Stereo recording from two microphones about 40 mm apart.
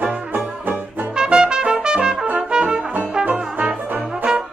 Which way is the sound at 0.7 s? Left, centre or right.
Right.